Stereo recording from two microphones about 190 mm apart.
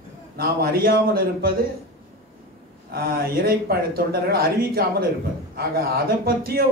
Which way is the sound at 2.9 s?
50° right (ahead or behind).